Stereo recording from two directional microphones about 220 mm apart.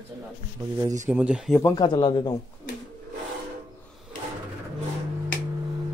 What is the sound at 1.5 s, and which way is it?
Speech, 15° left (ahead or behind).